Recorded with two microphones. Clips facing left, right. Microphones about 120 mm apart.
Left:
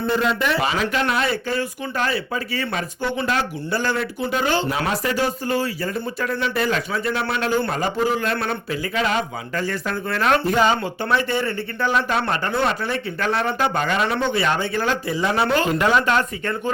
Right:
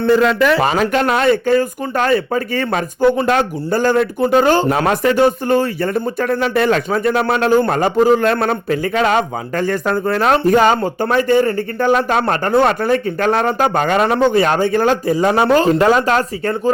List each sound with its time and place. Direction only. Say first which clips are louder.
0.0 s speech: right 8 dB; 90° right
0.6 s speech: right 7 dB; 50° right (ahead or behind)